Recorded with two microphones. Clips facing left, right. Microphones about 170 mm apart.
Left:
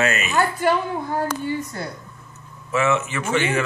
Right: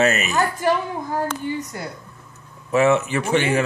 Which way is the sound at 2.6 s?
35° right (ahead or behind).